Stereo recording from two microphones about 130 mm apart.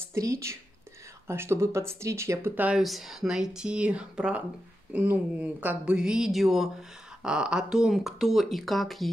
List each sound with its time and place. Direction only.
0.1 s speech: 25° right (ahead or behind)
2.8 s speech: centre (ahead or behind)